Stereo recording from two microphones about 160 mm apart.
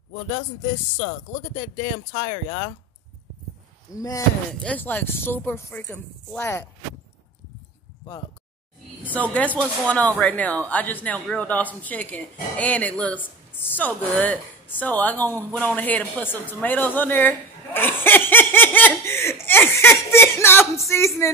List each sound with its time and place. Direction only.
2.1 s speech: 25° left (ahead or behind)
3.9 s speech: 20° left (ahead or behind)
4.6 s a man's voice: 10° left (ahead or behind)
9.0 s a man's voice: 10° left (ahead or behind)